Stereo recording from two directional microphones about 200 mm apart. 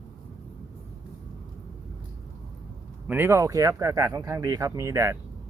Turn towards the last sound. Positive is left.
turn(degrees=-15)  # may be behind; listen again after turning